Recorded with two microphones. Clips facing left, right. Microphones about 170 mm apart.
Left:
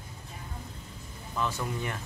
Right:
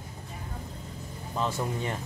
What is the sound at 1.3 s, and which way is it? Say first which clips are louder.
Speech: right 2 dB; 25° right (ahead or behind).